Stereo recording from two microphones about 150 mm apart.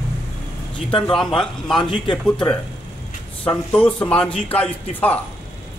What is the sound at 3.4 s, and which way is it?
A man's voice, 10° left (ahead or behind).